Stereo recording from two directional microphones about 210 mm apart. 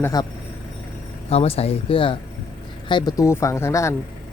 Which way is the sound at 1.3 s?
30° left (ahead or behind).